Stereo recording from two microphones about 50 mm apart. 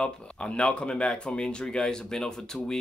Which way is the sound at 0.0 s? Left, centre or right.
Left.